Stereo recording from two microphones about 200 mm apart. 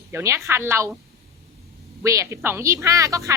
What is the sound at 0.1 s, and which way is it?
Speech, 15° right (ahead or behind).